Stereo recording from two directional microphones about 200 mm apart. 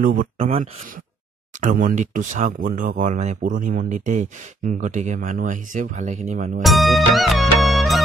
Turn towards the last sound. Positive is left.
turn(degrees=0)  # may be behind; listen again after turning